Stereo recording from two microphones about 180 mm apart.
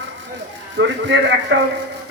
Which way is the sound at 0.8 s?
90° right.